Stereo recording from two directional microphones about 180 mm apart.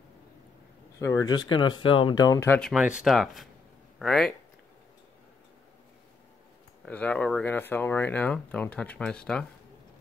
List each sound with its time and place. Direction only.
0.9 s speech: 20° left (ahead or behind)
2.5 s speech: centre (ahead or behind)
6.9 s speech: 5° left (ahead or behind)